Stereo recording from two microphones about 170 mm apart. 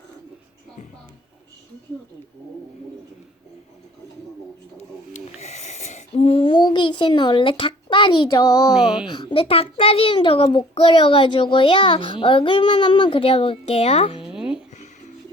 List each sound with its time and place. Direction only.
4.8 s wheeze: 40° left (ahead or behind); by 8.7 s 25° left (ahead or behind)
8.7 s speech: 5° right (ahead or behind)
9.0 s a child's voice: 30° left (ahead or behind)
14.3 s a sound: 5° right (ahead or behind)